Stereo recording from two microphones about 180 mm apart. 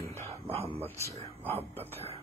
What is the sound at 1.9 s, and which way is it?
Speech, 35° right (ahead or behind).